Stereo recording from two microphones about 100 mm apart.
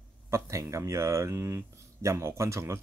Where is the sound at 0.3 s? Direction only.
30° right (ahead or behind).